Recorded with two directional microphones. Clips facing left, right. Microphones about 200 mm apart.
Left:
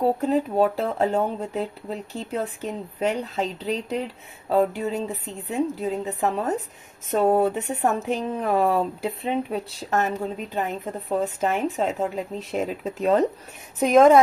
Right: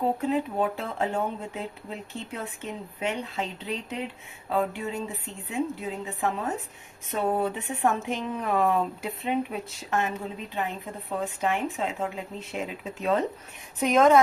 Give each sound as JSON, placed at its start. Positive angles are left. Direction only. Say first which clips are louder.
{"t": 0.2, "sound": "speech", "louder": "left 5 dB", "side_deg": 40}
{"t": 11.2, "sound": "speech", "louder": "left 3 dB", "side_deg": 40}